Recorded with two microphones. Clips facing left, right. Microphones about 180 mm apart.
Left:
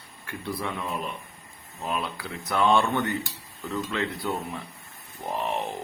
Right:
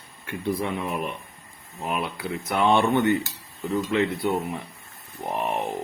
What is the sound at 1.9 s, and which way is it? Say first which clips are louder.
Speech: right 3 dB; 20° right (ahead or behind).